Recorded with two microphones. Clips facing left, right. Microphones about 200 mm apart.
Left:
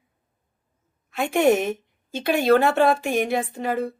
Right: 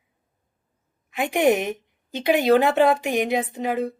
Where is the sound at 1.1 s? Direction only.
15° right (ahead or behind).